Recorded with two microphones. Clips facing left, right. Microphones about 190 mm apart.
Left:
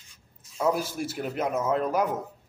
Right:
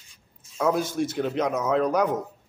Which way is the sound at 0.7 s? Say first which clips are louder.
Right 5 dB; 5° left (ahead or behind).